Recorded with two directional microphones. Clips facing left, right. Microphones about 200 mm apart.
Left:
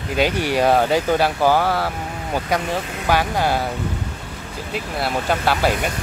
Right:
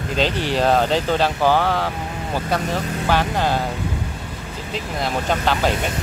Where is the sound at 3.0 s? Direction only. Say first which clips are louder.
Left 1 dB; 10° left (ahead or behind).